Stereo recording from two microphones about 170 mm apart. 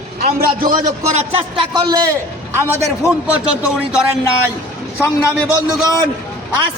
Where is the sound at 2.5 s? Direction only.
15° right (ahead or behind).